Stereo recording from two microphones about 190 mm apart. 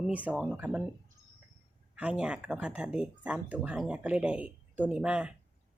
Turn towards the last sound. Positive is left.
turn(degrees=-5)  # may be behind; listen again after turning